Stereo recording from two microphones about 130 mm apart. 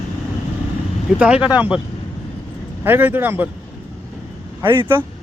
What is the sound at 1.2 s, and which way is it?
Speech, 10° right (ahead or behind).